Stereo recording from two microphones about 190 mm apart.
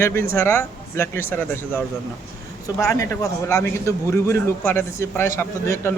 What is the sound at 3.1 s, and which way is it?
A man's voice, 15° left (ahead or behind).